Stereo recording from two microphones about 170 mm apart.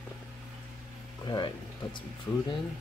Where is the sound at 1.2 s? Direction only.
25° left (ahead or behind).